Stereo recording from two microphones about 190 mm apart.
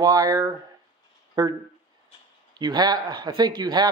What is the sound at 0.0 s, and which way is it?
Speech, 20° right (ahead or behind).